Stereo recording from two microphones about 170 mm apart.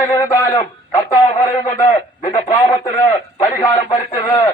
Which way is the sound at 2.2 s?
20° left (ahead or behind).